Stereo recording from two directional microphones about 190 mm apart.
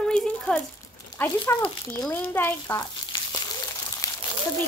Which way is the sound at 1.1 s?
10° left (ahead or behind).